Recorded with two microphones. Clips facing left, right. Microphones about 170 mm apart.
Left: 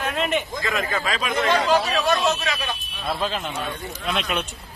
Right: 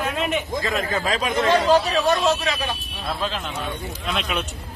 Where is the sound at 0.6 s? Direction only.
35° right (ahead or behind).